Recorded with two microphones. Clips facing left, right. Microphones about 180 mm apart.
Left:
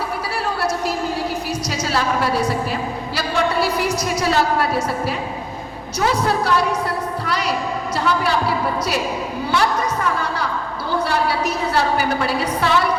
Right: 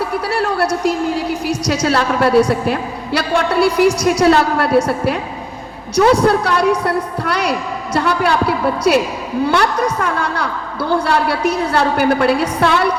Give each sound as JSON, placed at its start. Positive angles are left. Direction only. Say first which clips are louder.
{"t": 1.6, "sound": "a woman's voice", "louder": "right 7 dB", "side_deg": -65}